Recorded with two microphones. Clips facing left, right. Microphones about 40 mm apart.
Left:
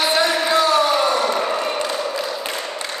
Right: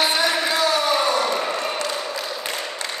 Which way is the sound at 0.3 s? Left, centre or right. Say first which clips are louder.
Left 4 dB; centre.